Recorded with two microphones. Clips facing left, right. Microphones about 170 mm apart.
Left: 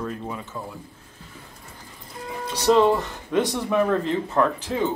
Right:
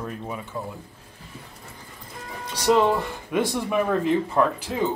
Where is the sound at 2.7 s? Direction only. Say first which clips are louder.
Left 2 dB; 15° right (ahead or behind).